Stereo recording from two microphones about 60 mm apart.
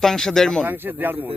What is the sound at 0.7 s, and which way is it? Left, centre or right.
Speech, right.